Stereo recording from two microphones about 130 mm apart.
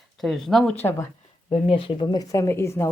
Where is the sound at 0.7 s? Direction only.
20° left (ahead or behind).